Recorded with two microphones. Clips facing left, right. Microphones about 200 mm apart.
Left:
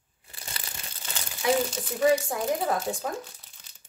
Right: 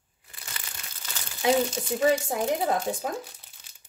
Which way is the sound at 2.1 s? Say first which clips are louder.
Left 1 dB; 25° right (ahead or behind).